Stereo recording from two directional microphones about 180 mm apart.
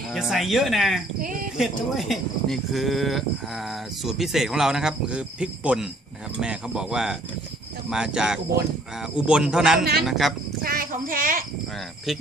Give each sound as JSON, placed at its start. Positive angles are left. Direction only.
{"t": 0.1, "sound": "speech", "side_deg": 0}
{"t": 1.2, "sound": "speech", "side_deg": -50}
{"t": 1.6, "sound": "speech", "side_deg": 0}
{"t": 10.6, "sound": "speech", "side_deg": -55}